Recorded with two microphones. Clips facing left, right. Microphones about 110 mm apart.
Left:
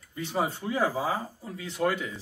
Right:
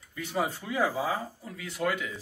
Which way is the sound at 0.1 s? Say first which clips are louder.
Left 1 dB; 25° left (ahead or behind).